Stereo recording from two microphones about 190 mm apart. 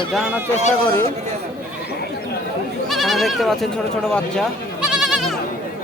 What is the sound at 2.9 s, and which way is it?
Speech, centre (ahead or behind).